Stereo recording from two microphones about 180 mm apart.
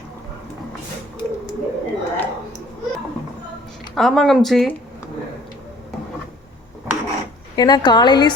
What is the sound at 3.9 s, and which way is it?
Speech, centre (ahead or behind).